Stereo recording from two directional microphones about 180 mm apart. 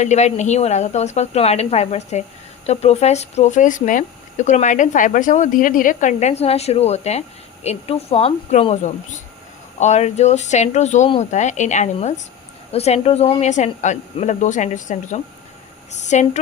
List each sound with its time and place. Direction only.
0.0 s speech: 40° left (ahead or behind)